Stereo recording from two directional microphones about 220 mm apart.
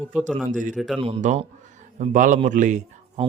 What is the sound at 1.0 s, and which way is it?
Speech, 25° right (ahead or behind).